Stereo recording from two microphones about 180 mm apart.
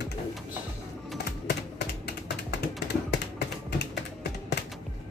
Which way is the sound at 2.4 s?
70° left (ahead or behind).